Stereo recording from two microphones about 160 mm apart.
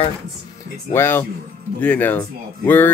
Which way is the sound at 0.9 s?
15° left (ahead or behind).